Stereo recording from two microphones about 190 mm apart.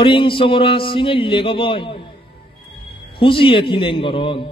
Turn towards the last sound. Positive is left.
turn(degrees=25)  # may be behind; listen again after turning